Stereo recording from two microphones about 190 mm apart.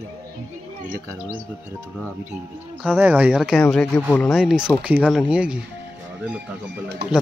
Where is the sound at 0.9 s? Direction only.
15° right (ahead or behind).